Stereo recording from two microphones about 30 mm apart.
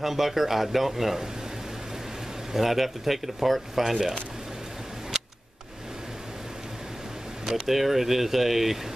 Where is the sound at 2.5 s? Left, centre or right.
Centre.